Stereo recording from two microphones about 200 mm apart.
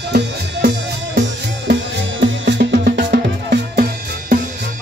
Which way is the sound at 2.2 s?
60° right (ahead or behind).